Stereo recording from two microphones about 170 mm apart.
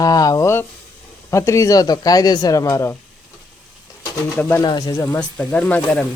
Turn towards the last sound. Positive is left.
turn(degrees=5)  # may be behind; listen again after turning